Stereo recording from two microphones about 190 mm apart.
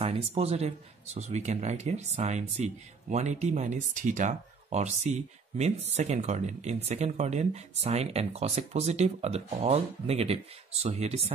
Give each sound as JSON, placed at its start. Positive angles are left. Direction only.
{"t": 0.0, "sound": "speech", "side_deg": -30}